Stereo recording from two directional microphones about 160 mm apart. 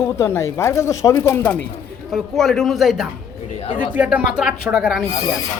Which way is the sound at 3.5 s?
40° left (ahead or behind).